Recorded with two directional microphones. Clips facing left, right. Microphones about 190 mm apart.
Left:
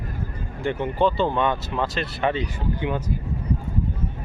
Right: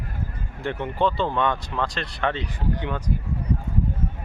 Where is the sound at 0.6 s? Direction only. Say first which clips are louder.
Left 2 dB; centre (ahead or behind).